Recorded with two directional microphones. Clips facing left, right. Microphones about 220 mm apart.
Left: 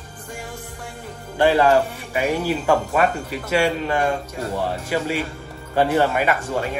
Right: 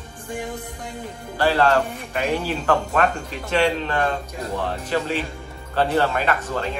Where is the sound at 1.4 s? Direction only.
15° left (ahead or behind).